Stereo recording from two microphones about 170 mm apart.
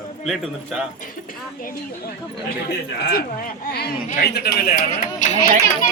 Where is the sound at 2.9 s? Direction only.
65° left (ahead or behind).